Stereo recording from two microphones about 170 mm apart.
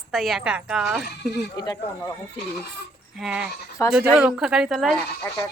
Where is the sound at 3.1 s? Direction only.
5° right (ahead or behind).